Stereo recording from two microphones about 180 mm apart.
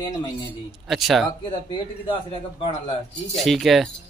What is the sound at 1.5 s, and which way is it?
Speech, 30° left (ahead or behind).